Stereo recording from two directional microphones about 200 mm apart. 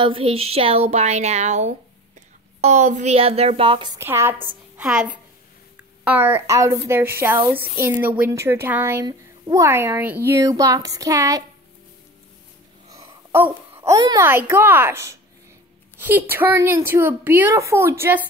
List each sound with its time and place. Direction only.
0.0 s a woman's voice: 25° right (ahead or behind)
12.9 s a sound: 15° right (ahead or behind)
13.9 s a woman's voice: 20° right (ahead or behind)